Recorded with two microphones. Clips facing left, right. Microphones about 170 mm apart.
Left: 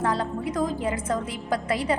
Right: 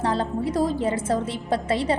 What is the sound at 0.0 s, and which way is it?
A woman's voice, 30° right (ahead or behind).